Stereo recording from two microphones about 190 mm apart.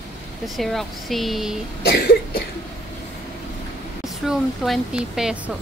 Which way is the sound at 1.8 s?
55° left (ahead or behind).